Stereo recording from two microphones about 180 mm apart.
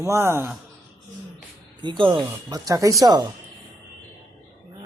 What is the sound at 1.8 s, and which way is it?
Speech, 25° right (ahead or behind).